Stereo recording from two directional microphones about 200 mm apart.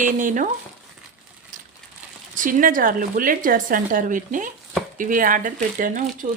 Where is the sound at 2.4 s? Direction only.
45° right (ahead or behind).